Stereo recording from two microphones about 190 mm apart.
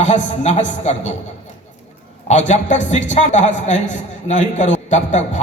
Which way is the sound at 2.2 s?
40° left (ahead or behind).